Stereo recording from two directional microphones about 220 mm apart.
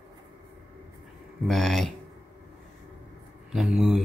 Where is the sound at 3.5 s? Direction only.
Centre (ahead or behind).